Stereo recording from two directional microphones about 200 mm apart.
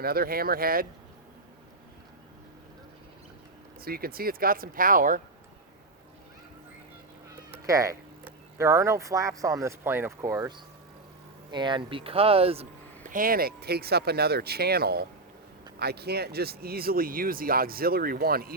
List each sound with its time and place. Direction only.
0.0 s speech: 50° right (ahead or behind)
3.8 s speech: 50° right (ahead or behind)
7.7 s speech: 15° right (ahead or behind)
11.5 s speech: 25° right (ahead or behind)
13.1 s speech: 45° right (ahead or behind)